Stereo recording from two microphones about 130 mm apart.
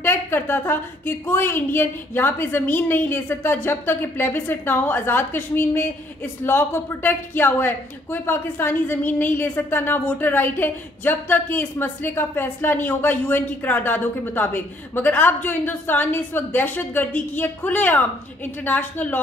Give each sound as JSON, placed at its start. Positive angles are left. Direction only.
{"t": 0.0, "sound": "a woman's voice", "side_deg": 15}